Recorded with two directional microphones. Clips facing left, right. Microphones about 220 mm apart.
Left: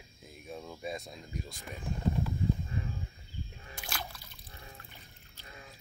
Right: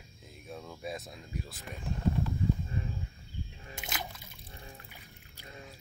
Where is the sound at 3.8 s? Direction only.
20° right (ahead or behind).